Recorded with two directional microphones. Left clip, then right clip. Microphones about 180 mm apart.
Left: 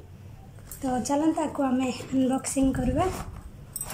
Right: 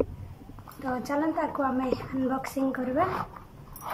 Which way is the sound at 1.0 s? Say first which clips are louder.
Left 2 dB; 15° left (ahead or behind).